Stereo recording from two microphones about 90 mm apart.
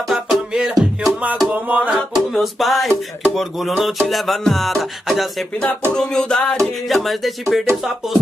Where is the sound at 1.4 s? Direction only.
15° right (ahead or behind).